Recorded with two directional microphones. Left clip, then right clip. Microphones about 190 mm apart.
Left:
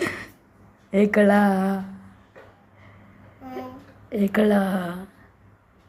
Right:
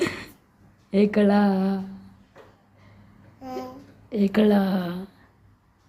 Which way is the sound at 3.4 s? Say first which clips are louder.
Right 1 dB; 20° right (ahead or behind).